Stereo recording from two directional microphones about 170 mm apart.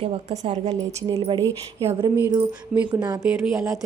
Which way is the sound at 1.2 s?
25° right (ahead or behind).